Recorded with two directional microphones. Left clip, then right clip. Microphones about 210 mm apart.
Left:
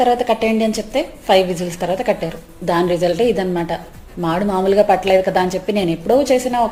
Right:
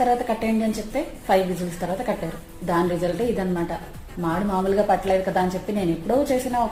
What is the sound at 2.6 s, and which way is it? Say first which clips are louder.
A woman's voice: left 7 dB; 30° left (ahead or behind).